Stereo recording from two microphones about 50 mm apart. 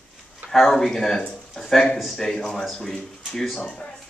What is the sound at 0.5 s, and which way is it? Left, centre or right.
Speech, centre.